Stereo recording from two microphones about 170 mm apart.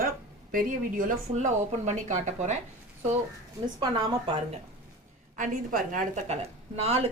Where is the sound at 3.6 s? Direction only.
25° right (ahead or behind).